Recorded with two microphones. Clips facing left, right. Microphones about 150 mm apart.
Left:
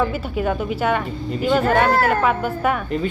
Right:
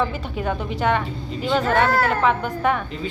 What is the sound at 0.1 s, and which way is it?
A woman's voice, 10° left (ahead or behind).